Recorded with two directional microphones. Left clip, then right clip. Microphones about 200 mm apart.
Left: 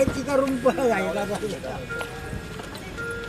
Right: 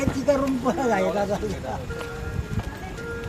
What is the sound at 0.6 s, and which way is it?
Speech, 60° right (ahead or behind).